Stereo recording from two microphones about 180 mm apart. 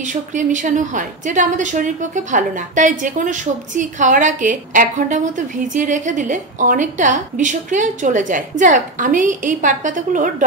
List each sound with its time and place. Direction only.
0.0 s a woman's voice: 45° right (ahead or behind)